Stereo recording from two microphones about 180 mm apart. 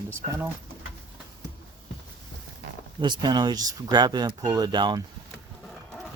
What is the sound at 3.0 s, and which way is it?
Speech, 25° right (ahead or behind).